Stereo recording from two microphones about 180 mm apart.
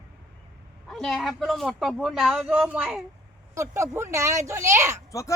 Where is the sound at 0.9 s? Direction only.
Centre (ahead or behind); by 5.0 s 15° right (ahead or behind).